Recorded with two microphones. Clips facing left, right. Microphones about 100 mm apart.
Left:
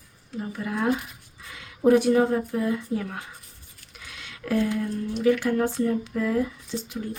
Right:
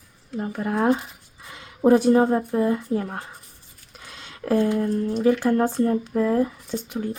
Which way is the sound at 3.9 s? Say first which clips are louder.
Right 1 dB; 35° right (ahead or behind).